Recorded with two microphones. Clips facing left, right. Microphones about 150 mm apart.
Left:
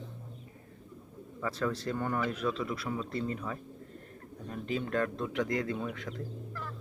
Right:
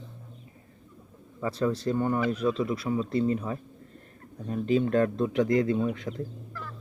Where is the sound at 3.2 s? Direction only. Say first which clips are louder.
Right 8 dB; 30° right (ahead or behind).